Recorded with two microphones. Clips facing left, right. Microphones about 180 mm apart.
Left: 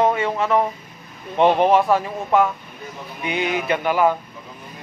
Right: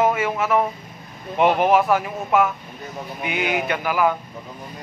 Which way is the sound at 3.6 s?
30° left (ahead or behind).